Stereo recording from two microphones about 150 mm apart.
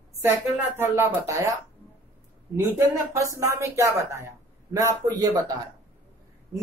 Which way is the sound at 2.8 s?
20° right (ahead or behind).